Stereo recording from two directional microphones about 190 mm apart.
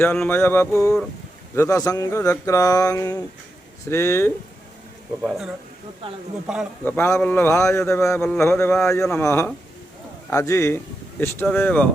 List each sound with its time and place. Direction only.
0.0 s a man's voice: 10° left (ahead or behind)
5.2 s speech: centre (ahead or behind)
6.8 s a man's voice: 10° left (ahead or behind)